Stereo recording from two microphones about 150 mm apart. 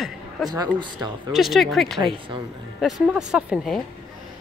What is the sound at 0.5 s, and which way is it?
Speech, 25° right (ahead or behind).